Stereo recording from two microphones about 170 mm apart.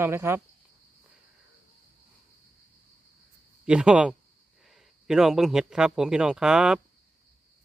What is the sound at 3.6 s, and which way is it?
A man's voice, 5° right (ahead or behind).